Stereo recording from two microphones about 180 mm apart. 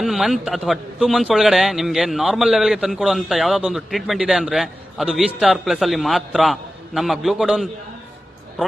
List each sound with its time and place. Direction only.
0.0 s a man's voice: centre (ahead or behind)